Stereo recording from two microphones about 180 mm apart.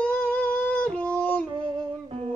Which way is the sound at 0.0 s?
10° left (ahead or behind).